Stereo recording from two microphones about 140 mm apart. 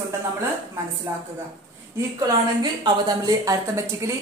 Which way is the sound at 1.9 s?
25° right (ahead or behind).